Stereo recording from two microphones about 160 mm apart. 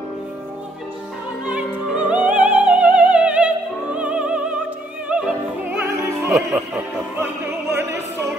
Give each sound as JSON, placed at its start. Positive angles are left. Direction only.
{"t": 1.4, "sound": "music", "side_deg": -10}
{"t": 5.0, "sound": "opera", "side_deg": -5}